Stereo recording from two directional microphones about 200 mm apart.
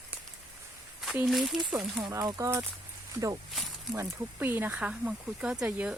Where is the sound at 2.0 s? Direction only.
15° right (ahead or behind).